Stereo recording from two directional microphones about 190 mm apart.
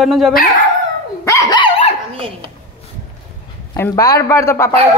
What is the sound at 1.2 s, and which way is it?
Dog, 20° left (ahead or behind).